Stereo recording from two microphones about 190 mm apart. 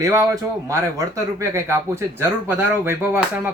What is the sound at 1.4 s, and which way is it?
Speech, 15° right (ahead or behind).